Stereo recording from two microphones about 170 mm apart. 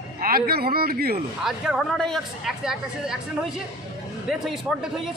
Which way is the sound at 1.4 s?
Centre (ahead or behind).